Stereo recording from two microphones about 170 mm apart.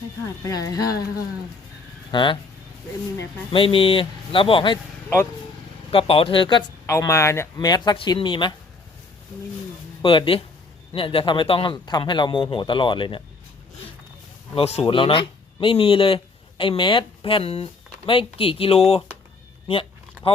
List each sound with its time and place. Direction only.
0.4 s a man's voice: 20° left (ahead or behind)
2.0 s a man's voice: 30° left (ahead or behind)
3.5 s a man's voice: 30° left (ahead or behind)
5.0 s speech: 10° left (ahead or behind)
5.9 s a man's voice: 35° left (ahead or behind)
6.8 s a man's voice: 20° left (ahead or behind)
10.0 s a man's voice: 30° left (ahead or behind)
14.5 s speech: 40° left (ahead or behind)